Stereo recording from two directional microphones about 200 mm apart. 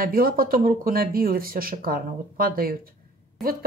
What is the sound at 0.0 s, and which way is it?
Speech, 45° right (ahead or behind).